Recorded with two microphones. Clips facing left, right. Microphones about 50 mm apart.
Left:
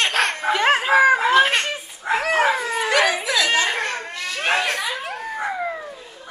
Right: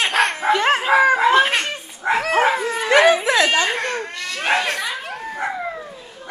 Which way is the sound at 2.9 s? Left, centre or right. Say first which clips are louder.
Right 7 dB; right.